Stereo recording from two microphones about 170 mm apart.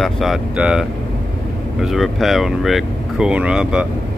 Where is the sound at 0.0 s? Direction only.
Centre (ahead or behind).